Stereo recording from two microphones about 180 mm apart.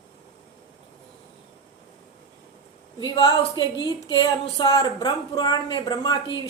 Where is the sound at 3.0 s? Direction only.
25° left (ahead or behind).